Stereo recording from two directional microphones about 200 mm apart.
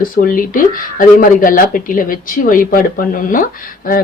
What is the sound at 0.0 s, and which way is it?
A man's voice, 45° left (ahead or behind).